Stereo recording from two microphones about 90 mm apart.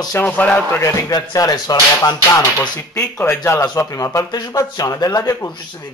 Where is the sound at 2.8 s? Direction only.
30° left (ahead or behind).